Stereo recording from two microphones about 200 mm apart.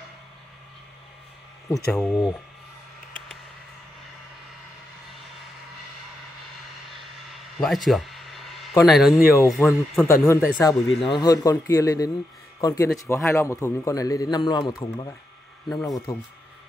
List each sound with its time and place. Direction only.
1.9 s speech: 5° left (ahead or behind)
7.5 s a sound: centre (ahead or behind)
8.8 s a man's voice: centre (ahead or behind); by 16.2 s 20° left (ahead or behind)